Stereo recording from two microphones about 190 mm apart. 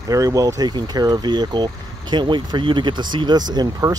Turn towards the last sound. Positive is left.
turn(degrees=-20)  # may be behind; listen again after turning